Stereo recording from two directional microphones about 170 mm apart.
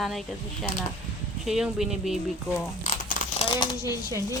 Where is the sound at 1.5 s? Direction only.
Centre (ahead or behind).